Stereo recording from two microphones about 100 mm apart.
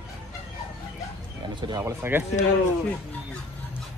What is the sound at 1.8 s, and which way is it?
Speech, 20° right (ahead or behind).